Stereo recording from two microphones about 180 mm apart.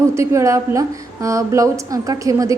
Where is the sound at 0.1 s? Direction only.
15° right (ahead or behind).